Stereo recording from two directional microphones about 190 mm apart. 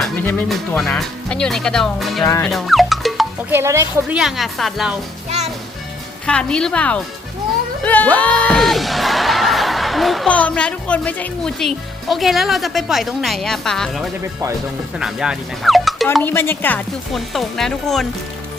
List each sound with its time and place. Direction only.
0.0 s speech: 5° left (ahead or behind)
2.2 s speech: 15° left (ahead or behind)
2.5 s music: centre (ahead or behind)
3.5 s a woman's voice: 15° right (ahead or behind)
4.2 s speech: centre (ahead or behind)
6.2 s speech: 5° left (ahead or behind)
7.9 s music: 10° left (ahead or behind)
14.9 s speech: 5° right (ahead or behind)
16.2 s speech: 10° left (ahead or behind)